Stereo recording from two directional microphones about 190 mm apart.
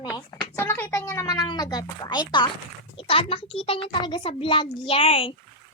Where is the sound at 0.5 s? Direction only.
10° left (ahead or behind); by 5.3 s 30° left (ahead or behind).